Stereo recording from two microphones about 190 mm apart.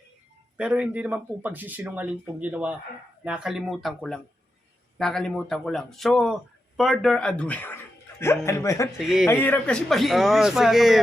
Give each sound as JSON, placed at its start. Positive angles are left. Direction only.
{"t": 0.5, "sound": "a man's voice", "side_deg": -5}
{"t": 9.0, "sound": "a man's voice", "side_deg": 0}
{"t": 9.2, "sound": "a man's voice", "side_deg": 10}